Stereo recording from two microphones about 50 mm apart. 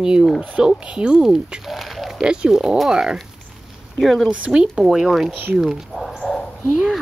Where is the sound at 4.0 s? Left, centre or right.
Centre.